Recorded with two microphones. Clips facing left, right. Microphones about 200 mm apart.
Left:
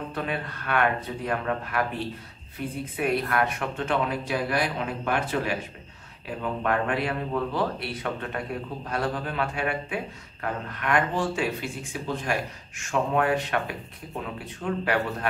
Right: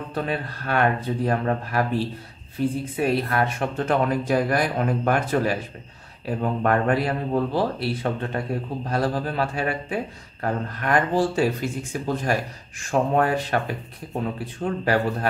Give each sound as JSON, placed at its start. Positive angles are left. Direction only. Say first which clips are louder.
{"t": 0.1, "sound": "speech", "louder": "right 4 dB", "side_deg": -35}